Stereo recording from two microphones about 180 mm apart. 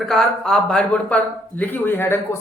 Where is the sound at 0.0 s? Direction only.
Centre (ahead or behind).